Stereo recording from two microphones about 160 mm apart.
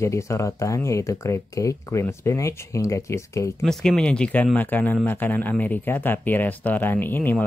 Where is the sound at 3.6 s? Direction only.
5° left (ahead or behind).